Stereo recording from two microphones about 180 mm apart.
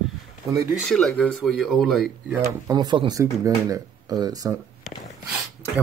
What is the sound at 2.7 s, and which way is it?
Speech, 25° right (ahead or behind).